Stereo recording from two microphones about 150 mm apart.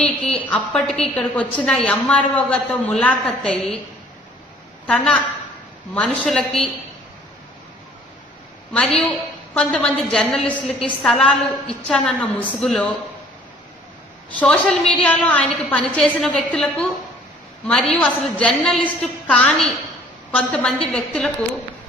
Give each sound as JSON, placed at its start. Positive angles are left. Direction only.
{"t": 0.4, "sound": "a woman's voice", "side_deg": 5}
{"t": 4.9, "sound": "a woman's voice", "side_deg": 5}
{"t": 8.7, "sound": "a woman's voice", "side_deg": 5}
{"t": 10.7, "sound": "a woman's voice", "side_deg": 40}
{"t": 11.0, "sound": "a woman's voice", "side_deg": 5}
{"t": 14.3, "sound": "a woman's voice", "side_deg": 5}